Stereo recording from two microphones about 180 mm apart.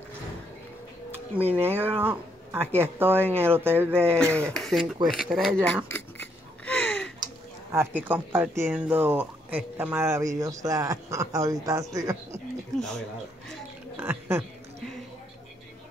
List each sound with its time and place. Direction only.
1.5 s speech: 10° right (ahead or behind)
4.6 s speech: centre (ahead or behind)
5.9 s a sound: 10° left (ahead or behind)
7.7 s speech: 10° right (ahead or behind)
12.7 s speech: centre (ahead or behind)
13.9 s a sound: 10° right (ahead or behind)